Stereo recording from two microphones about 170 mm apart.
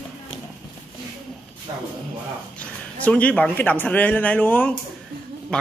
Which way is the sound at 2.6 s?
10° left (ahead or behind).